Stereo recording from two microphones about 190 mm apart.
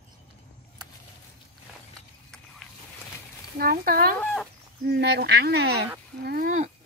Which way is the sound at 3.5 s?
50° right (ahead or behind).